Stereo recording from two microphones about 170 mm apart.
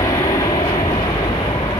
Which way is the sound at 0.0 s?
20° left (ahead or behind).